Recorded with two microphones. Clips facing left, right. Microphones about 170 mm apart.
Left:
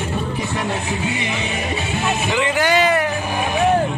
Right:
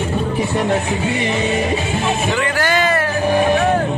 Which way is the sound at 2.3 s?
15° left (ahead or behind).